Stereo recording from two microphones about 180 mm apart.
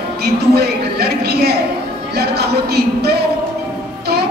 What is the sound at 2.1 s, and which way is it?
Speech, 65° right (ahead or behind).